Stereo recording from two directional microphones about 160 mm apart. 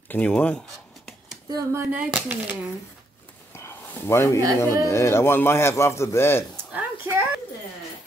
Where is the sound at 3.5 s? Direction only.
15° left (ahead or behind).